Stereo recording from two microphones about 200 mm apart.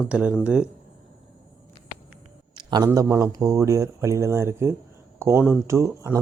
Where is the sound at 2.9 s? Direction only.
15° right (ahead or behind).